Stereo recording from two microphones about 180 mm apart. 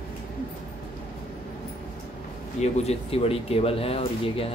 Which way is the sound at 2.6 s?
35° left (ahead or behind).